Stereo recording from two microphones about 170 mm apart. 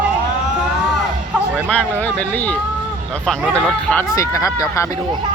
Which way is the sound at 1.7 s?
10° left (ahead or behind).